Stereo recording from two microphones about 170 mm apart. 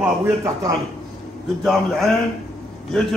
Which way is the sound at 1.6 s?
Centre (ahead or behind).